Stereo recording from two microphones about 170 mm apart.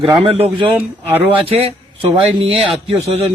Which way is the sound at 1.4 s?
35° right (ahead or behind).